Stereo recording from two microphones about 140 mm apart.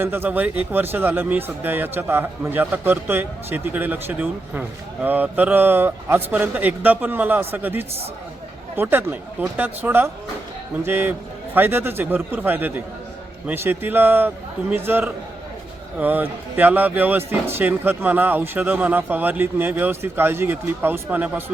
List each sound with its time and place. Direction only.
0.0 s speech: 15° right (ahead or behind)